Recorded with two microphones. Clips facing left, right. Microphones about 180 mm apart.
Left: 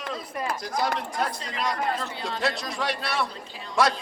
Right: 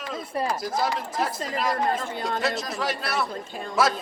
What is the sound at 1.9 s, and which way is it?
Speech, 50° right (ahead or behind).